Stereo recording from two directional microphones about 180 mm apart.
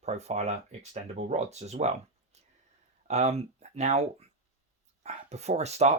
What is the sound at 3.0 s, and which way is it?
Speech, 35° right (ahead or behind).